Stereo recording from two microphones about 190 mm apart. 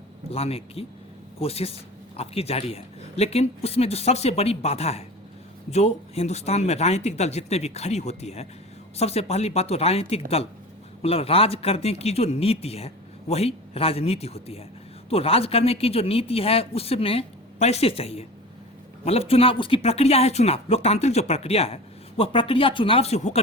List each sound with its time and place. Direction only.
0.3 s a man's voice: 30° left (ahead or behind)